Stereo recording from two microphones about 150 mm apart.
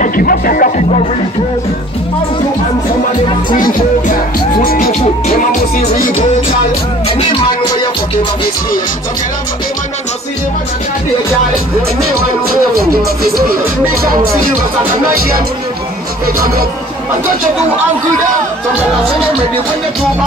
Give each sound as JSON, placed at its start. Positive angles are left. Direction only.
{"t": 0.0, "sound": "music", "side_deg": 70}
{"t": 3.5, "sound": "music", "side_deg": 70}